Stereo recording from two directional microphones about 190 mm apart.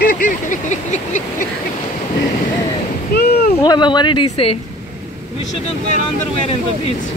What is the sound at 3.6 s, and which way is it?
Speech, 25° left (ahead or behind).